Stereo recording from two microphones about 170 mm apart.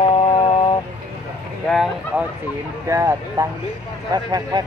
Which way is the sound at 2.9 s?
20° right (ahead or behind).